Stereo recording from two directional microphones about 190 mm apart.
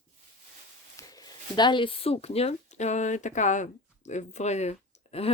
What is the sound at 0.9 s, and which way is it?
Speech, 20° left (ahead or behind).